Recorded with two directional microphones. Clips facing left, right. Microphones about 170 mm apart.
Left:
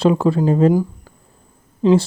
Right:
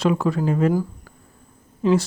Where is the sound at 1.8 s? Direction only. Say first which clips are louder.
Left 5 dB; 25° left (ahead or behind).